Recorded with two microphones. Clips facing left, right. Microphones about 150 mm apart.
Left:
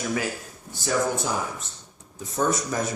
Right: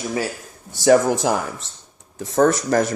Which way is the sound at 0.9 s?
85° right.